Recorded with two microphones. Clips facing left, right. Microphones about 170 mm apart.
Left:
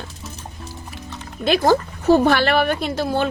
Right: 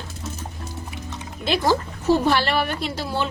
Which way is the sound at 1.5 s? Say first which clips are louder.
Left 4 dB; 55° left (ahead or behind).